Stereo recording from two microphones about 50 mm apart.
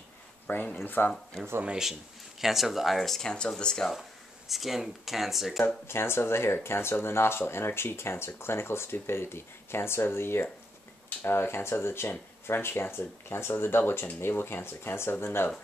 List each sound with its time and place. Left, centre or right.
0.7 s speech: left
1.1 s speech: centre
3.2 s speech: centre
4.5 s speech: centre
5.9 s speech: left